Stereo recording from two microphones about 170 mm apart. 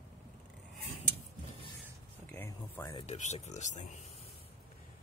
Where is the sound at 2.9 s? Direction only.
40° left (ahead or behind).